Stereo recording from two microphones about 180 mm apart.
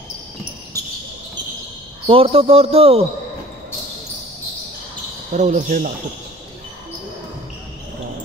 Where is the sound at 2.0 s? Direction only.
30° right (ahead or behind).